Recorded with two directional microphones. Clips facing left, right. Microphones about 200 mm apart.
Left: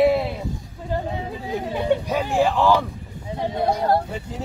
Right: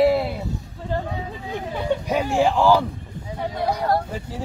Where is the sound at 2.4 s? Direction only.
15° right (ahead or behind).